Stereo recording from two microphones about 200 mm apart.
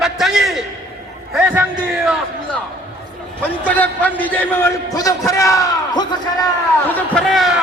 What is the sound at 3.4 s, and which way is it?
A man's voice, 10° left (ahead or behind).